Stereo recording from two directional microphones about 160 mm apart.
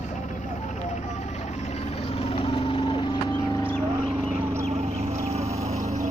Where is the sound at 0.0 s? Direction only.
50° left (ahead or behind); by 3.7 s 20° left (ahead or behind).